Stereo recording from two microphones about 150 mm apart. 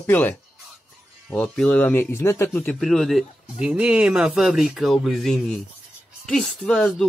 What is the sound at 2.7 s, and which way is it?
A man's voice, centre (ahead or behind).